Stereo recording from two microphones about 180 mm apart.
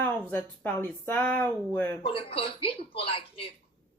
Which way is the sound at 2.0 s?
30° left (ahead or behind).